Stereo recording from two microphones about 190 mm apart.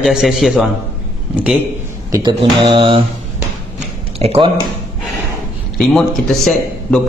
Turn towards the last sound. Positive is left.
turn(degrees=5)  # may be behind; listen again after turning